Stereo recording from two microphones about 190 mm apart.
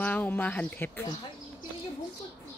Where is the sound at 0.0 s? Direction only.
10° left (ahead or behind).